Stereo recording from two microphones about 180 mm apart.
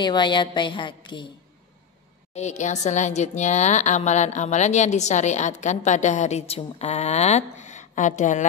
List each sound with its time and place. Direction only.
0.0 s a woman's voice: 25° left (ahead or behind)
2.3 s a woman's voice: 40° left (ahead or behind)